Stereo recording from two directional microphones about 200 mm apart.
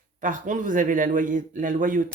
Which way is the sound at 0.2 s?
40° right (ahead or behind).